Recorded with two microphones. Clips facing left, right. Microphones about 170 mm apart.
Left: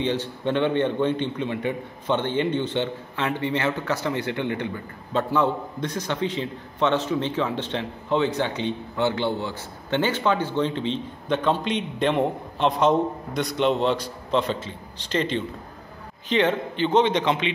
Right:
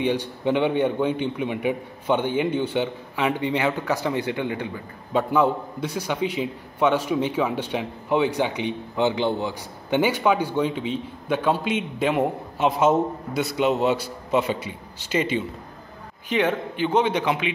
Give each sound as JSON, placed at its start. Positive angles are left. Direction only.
{"t": 0.0, "sound": "a man's voice", "side_deg": -10}